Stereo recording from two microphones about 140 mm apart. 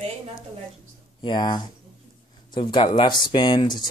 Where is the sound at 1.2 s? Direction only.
35° left (ahead or behind).